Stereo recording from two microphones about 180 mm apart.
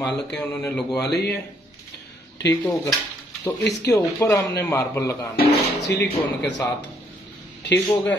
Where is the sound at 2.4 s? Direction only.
20° left (ahead or behind).